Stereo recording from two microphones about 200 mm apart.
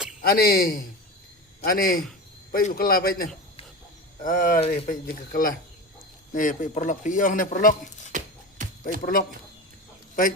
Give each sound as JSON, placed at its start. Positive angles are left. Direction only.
{"t": 0.2, "sound": "a man's voice", "side_deg": 50}
{"t": 4.6, "sound": "speech", "side_deg": 30}
{"t": 4.9, "sound": "a man's voice", "side_deg": 45}
{"t": 8.1, "sound": "music", "side_deg": -40}
{"t": 8.8, "sound": "speech", "side_deg": 45}